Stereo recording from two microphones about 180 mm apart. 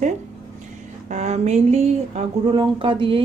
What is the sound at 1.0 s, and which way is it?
Speech, 40° right (ahead or behind).